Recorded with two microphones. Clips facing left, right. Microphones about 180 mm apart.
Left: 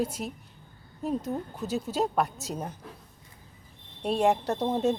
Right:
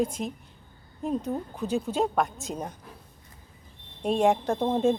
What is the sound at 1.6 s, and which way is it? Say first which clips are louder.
A woman's voice: right 3 dB; 5° left (ahead or behind).